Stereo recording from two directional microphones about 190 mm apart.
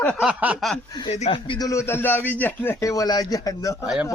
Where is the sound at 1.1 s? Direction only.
30° left (ahead or behind).